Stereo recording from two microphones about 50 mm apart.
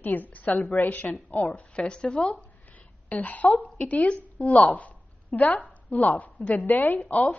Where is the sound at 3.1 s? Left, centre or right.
Left.